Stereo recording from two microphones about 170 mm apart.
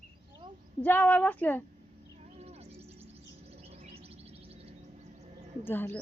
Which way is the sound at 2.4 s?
40° right (ahead or behind).